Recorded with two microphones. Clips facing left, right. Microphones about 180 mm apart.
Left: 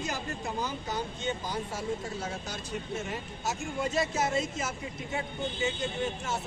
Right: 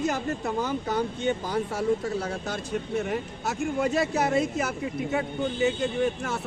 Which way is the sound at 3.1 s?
60° right (ahead or behind).